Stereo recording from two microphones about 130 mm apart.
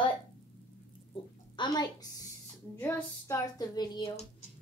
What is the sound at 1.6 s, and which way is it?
Speech, 35° left (ahead or behind).